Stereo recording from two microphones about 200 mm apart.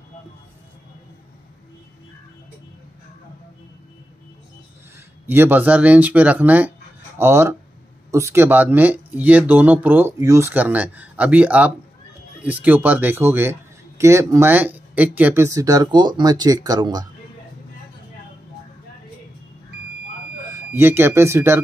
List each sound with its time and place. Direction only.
5.2 s speech: 10° right (ahead or behind)
20.5 s speech: 10° right (ahead or behind)